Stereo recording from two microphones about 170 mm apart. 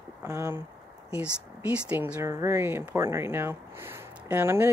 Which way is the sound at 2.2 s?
15° right (ahead or behind).